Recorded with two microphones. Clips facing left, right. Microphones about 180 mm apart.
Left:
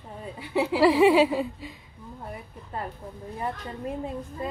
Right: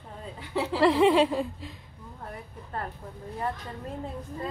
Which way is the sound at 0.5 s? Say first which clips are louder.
Left 3 dB; 10° left (ahead or behind).